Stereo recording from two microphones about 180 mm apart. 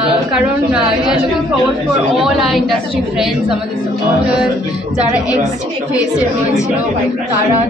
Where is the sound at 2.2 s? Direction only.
Centre (ahead or behind).